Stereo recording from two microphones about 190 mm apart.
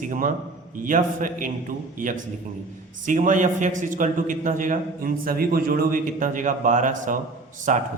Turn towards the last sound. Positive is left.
turn(degrees=-40)  # may be behind; listen again after turning